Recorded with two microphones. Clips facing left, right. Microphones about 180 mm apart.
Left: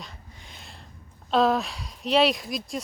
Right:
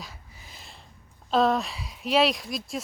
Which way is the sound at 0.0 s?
5° right (ahead or behind).